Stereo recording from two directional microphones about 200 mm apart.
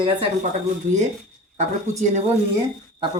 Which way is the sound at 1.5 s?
35° right (ahead or behind).